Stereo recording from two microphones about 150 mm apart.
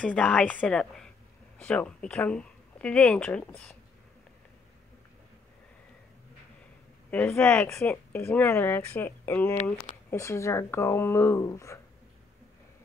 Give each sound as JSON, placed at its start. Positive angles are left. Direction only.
{"t": 0.0, "sound": "speech", "side_deg": 5}
{"t": 7.1, "sound": "speech", "side_deg": 10}